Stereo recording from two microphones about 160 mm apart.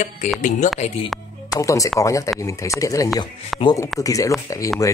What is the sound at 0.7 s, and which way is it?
Speech, 45° left (ahead or behind).